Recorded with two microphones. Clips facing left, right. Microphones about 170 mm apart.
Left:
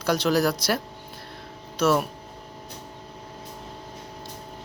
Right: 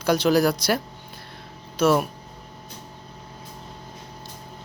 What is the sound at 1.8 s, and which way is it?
Speech, centre (ahead or behind).